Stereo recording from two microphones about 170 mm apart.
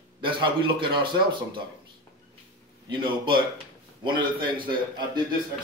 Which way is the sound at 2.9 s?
30° right (ahead or behind).